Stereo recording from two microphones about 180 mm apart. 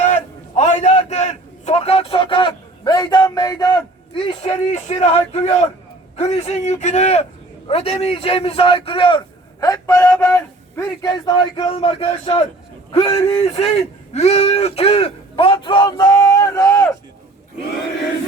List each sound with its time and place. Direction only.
0.0 s a man's voice: 40° left (ahead or behind); by 9.9 s 20° left (ahead or behind)
9.9 s speech: 10° left (ahead or behind)